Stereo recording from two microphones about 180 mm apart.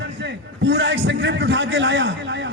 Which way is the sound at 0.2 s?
75° right (ahead or behind).